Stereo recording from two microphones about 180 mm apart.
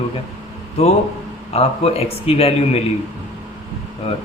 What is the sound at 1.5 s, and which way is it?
A man's voice, 35° left (ahead or behind).